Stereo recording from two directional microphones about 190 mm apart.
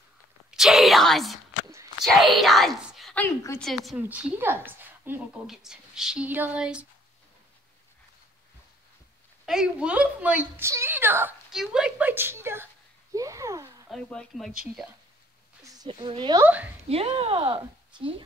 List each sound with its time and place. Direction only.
0.5 s a sound: centre (ahead or behind)
2.0 s speech: centre (ahead or behind)
4.0 s a woman's voice: 10° right (ahead or behind)
9.5 s a woman's voice: 5° right (ahead or behind)
13.1 s a sound: 15° right (ahead or behind)
13.8 s speech: centre (ahead or behind)
15.6 s a woman's voice: 20° right (ahead or behind)